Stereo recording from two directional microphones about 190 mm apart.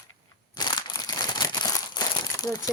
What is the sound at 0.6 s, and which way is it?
Crumpling, 20° left (ahead or behind).